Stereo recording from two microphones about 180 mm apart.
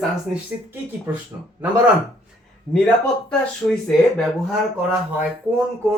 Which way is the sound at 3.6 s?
20° left (ahead or behind).